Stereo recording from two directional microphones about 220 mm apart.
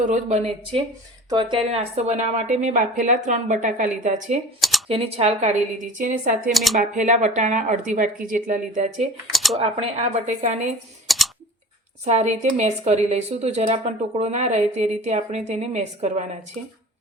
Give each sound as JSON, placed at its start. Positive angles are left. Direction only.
{"t": 0.0, "sound": "speech", "side_deg": -35}
{"t": 6.5, "sound": "speech", "side_deg": 0}
{"t": 6.7, "sound": "speech", "side_deg": -35}
{"t": 9.3, "sound": "speech", "side_deg": 0}
{"t": 9.6, "sound": "speech", "side_deg": -30}
{"t": 11.1, "sound": "typing", "side_deg": 0}
{"t": 12.0, "sound": "speech", "side_deg": -30}